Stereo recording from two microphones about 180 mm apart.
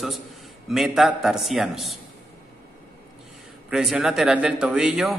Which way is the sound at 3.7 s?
5° right (ahead or behind).